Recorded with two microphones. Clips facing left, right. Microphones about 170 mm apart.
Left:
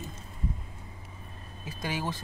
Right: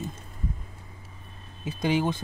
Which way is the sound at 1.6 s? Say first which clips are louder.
Right 8 dB; 20° right (ahead or behind).